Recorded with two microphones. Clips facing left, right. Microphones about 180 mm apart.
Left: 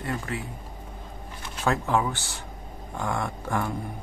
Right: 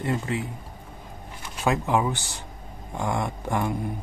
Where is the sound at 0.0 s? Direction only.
20° right (ahead or behind).